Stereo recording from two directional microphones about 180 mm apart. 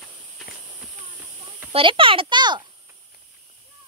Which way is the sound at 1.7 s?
30° right (ahead or behind).